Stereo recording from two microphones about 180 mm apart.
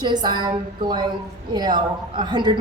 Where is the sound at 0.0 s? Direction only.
25° right (ahead or behind).